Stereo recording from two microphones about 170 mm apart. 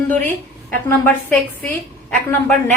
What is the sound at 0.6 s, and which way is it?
A woman's voice, 10° left (ahead or behind).